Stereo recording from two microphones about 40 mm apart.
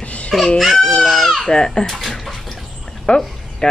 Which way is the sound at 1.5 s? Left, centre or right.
Centre.